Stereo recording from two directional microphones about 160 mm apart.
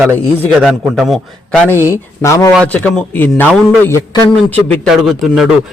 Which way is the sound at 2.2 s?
20° left (ahead or behind).